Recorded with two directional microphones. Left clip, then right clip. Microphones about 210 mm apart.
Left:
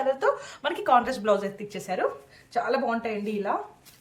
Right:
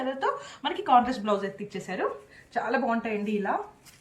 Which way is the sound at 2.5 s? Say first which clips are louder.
Left 1 dB; 45° left (ahead or behind).